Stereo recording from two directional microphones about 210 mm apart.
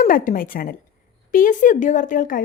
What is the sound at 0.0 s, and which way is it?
A woman's voice, 40° left (ahead or behind).